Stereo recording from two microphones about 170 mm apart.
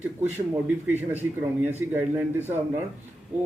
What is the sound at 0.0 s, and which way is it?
Speech, 10° right (ahead or behind).